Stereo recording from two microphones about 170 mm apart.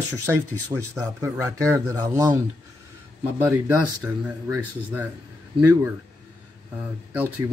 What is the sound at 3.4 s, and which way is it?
Speech, 10° right (ahead or behind).